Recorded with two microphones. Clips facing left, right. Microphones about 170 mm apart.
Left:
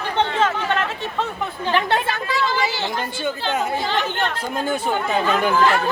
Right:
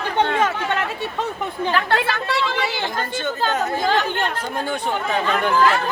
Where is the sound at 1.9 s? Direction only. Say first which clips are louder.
Right 1 dB; 70° right (ahead or behind).